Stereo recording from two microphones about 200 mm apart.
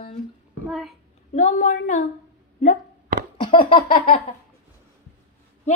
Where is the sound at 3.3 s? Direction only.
25° left (ahead or behind).